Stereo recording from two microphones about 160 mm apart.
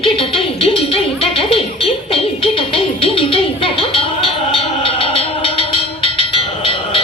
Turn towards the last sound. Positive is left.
turn(degrees=35)  # may be behind; listen again after turning